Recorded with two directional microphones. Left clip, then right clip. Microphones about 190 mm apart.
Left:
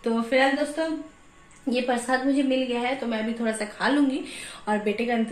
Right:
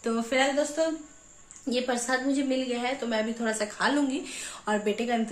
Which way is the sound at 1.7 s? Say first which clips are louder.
Left 3 dB; centre (ahead or behind).